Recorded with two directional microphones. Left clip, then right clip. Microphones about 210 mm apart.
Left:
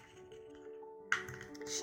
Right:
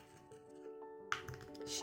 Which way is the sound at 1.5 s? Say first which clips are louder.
Right 1 dB; 40° right (ahead or behind).